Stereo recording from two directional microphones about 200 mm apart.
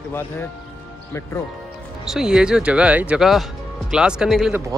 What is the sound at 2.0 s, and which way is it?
Speech, 5° right (ahead or behind).